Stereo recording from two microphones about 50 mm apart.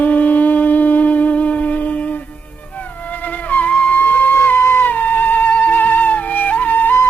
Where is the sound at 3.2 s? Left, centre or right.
Left.